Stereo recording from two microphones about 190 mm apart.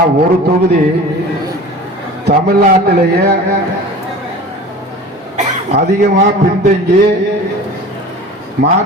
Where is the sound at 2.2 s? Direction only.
55° right (ahead or behind).